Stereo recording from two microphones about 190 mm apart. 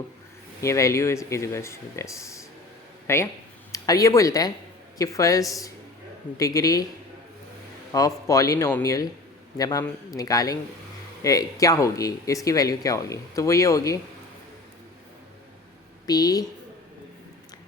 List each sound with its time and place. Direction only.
0.6 s a man's voice: 15° left (ahead or behind)
7.9 s a man's voice: 15° left (ahead or behind)
16.0 s a man's voice: 20° left (ahead or behind)